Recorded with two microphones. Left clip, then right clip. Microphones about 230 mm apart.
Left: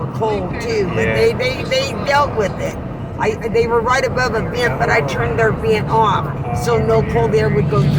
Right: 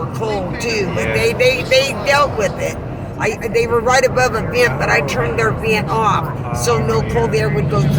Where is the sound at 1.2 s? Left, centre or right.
Right.